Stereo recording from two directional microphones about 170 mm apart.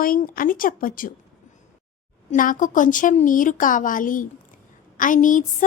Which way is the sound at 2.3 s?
50° left (ahead or behind).